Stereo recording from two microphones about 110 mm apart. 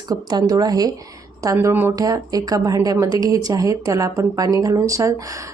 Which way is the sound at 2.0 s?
30° right (ahead or behind).